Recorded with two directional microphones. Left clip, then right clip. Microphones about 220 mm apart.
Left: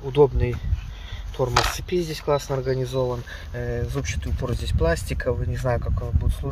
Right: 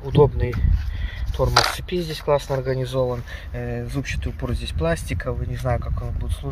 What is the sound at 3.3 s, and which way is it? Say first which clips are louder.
Speech: left 1 dB; 15° left (ahead or behind).